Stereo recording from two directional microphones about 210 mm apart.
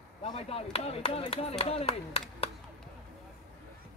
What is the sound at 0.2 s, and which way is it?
Speech, 30° left (ahead or behind).